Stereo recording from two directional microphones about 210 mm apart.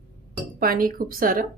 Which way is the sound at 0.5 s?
45° right (ahead or behind).